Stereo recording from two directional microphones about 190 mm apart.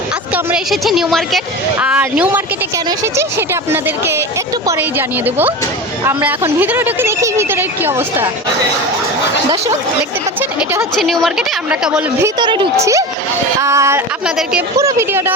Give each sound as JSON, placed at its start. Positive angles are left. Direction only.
{"t": 0.3, "sound": "a woman's voice", "side_deg": 0}
{"t": 10.6, "sound": "a woman's voice", "side_deg": -10}
{"t": 10.9, "sound": "a woman's voice", "side_deg": 0}
{"t": 12.2, "sound": "a woman's voice", "side_deg": -25}
{"t": 14.3, "sound": "a woman's voice", "side_deg": -5}
{"t": 14.8, "sound": "a woman's voice", "side_deg": -15}